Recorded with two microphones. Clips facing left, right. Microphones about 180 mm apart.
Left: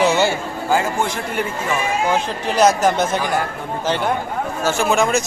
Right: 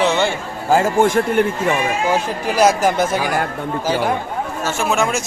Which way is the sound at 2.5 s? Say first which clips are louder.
Even; 5° right (ahead or behind).